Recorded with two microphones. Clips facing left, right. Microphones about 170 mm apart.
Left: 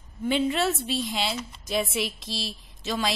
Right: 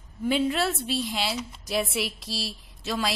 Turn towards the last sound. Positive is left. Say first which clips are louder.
# left 1 dB
turn(degrees=-5)  # may be behind; listen again after turning